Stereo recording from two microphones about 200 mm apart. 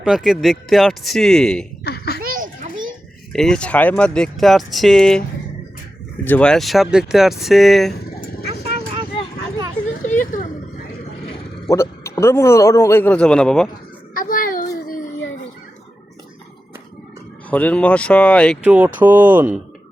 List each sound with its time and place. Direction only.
0.0 s speech: centre (ahead or behind)
1.8 s a sound: 50° left (ahead or behind)
2.2 s children playing: 45° right (ahead or behind)
3.3 s speech: 5° left (ahead or behind)
6.2 s speech: 5° left (ahead or behind)
10.0 s a sound: 40° left (ahead or behind)
11.7 s a man's voice: 15° left (ahead or behind)
14.1 s a sound: 45° left (ahead or behind)
17.5 s speech: 5° left (ahead or behind)
18.6 s speech: 5° right (ahead or behind)